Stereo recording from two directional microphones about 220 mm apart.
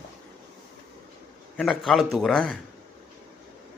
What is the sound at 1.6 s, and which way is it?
Speech, centre (ahead or behind).